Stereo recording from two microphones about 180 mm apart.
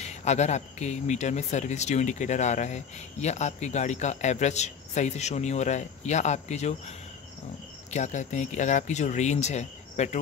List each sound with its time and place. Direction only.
0.0 s speech: 40° left (ahead or behind)
7.9 s speech: 40° left (ahead or behind)